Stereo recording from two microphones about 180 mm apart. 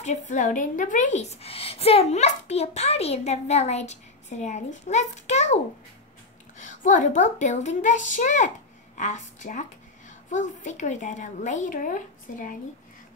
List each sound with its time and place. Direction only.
0.3 s a woman's voice: 45° left (ahead or behind)
6.6 s a woman's voice: 45° left (ahead or behind)